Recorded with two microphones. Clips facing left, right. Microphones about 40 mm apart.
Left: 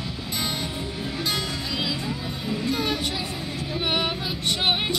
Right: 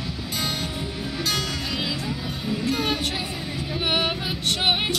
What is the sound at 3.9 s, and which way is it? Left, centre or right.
Female singing, right.